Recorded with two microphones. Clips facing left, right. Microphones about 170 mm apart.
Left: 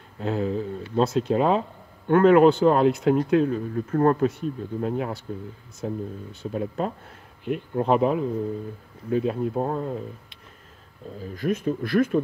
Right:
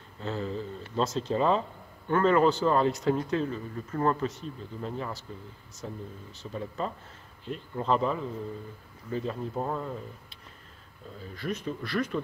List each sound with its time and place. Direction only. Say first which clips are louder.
0.2 s speech: left 7 dB; 60° left (ahead or behind)
11.1 s speech: left 8 dB; 45° left (ahead or behind)